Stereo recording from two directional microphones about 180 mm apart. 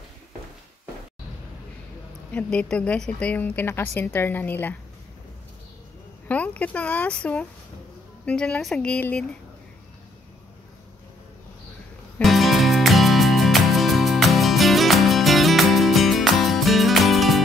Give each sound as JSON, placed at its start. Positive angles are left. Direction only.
{"t": 2.3, "sound": "a woman's voice", "side_deg": 5}
{"t": 6.2, "sound": "speech", "side_deg": 10}
{"t": 12.2, "sound": "music", "side_deg": 0}